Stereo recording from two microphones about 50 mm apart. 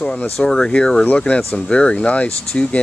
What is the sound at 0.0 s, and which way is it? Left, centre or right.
Speech, centre.